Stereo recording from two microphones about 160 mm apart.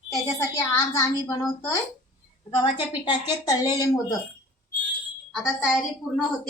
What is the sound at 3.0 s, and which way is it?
A woman's voice, 25° left (ahead or behind).